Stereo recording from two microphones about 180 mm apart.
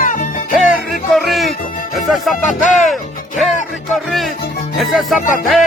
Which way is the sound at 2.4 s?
45° left (ahead or behind).